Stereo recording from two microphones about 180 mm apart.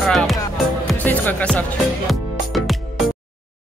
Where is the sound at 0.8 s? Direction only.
10° left (ahead or behind).